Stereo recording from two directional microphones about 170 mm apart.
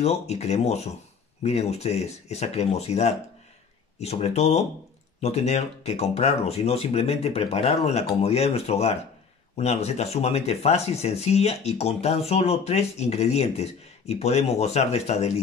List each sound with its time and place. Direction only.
0.0 s speech: 40° left (ahead or behind)